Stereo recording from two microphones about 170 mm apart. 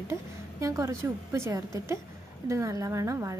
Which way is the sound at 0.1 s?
15° right (ahead or behind).